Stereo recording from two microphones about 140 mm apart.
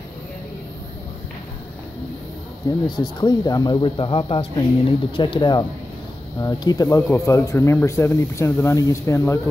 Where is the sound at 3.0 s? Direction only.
30° left (ahead or behind).